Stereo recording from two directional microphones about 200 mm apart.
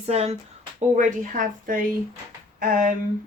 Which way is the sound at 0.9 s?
40° right (ahead or behind).